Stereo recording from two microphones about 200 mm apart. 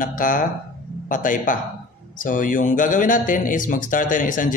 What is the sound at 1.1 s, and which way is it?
Speech, 40° left (ahead or behind).